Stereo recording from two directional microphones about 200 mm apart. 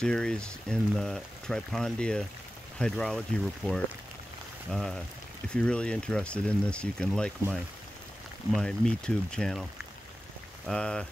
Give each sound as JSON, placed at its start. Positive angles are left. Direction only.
{"t": 0.0, "sound": "speech", "side_deg": 5}
{"t": 8.5, "sound": "speech", "side_deg": 5}
{"t": 10.7, "sound": "speech", "side_deg": 5}